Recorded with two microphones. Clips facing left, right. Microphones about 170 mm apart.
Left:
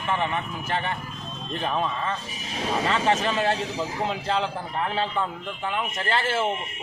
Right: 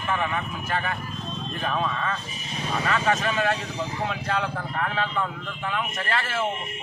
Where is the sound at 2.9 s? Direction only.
30° left (ahead or behind).